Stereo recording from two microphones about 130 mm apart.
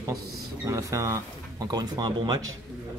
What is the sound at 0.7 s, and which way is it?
Speech, 25° right (ahead or behind).